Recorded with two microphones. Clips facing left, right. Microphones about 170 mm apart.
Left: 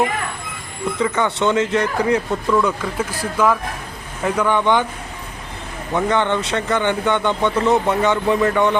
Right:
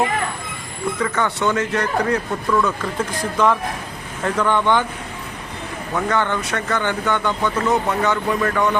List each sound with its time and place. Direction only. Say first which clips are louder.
0.9 s speech: left 3 dB; 15° left (ahead or behind)
5.9 s speech: left 3 dB; 20° left (ahead or behind)